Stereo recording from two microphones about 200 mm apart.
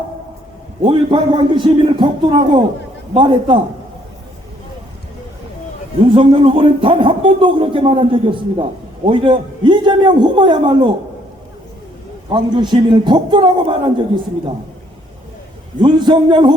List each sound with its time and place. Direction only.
0.9 s a man's voice: 25° right (ahead or behind)
6.1 s a man's voice: 25° right (ahead or behind)
12.3 s a man's voice: 25° right (ahead or behind)
15.8 s a man's voice: 20° right (ahead or behind)